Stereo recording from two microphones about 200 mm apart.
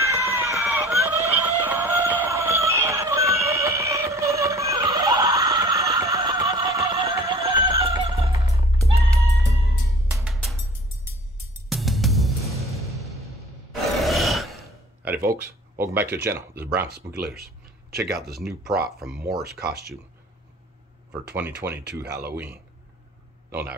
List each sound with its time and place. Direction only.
0.0 s run: 15° right (ahead or behind)
1.0 s a sound: 10° right (ahead or behind); by 8.3 s 25° right (ahead or behind)
8.9 s music: 15° right (ahead or behind)
10.2 s music: centre (ahead or behind)
11.7 s music: centre (ahead or behind)
13.8 s grunt: centre (ahead or behind)
15.0 s a sound: 15° right (ahead or behind)
15.8 s speech: 10° right (ahead or behind)
16.8 s speech: 55° right (ahead or behind)
18.9 s speech: centre (ahead or behind)
21.4 s speech: 10° right (ahead or behind)
22.0 s speech: 55° right (ahead or behind)
22.3 s speech: 10° right (ahead or behind)